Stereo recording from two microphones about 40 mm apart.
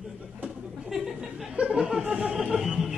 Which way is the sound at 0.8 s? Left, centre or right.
Centre.